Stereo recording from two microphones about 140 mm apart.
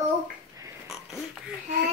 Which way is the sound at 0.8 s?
Centre (ahead or behind).